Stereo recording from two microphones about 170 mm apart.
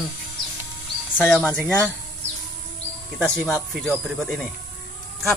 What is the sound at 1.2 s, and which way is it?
Speech, 5° left (ahead or behind).